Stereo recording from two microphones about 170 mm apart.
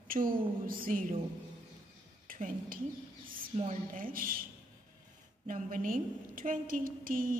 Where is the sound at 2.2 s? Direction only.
55° right (ahead or behind).